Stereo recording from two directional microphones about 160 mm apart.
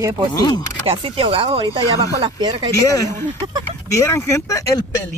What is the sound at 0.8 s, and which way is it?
Speech, 35° right (ahead or behind).